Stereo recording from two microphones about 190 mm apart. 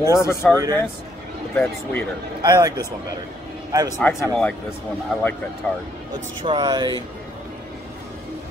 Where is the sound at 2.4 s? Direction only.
20° right (ahead or behind).